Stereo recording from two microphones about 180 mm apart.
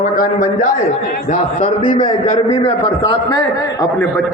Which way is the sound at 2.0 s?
30° left (ahead or behind).